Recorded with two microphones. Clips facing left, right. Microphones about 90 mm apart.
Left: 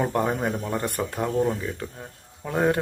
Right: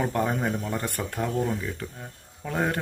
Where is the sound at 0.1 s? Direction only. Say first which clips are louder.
Left 2 dB; 20° left (ahead or behind).